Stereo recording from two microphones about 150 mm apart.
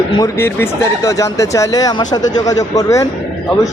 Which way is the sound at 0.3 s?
15° left (ahead or behind).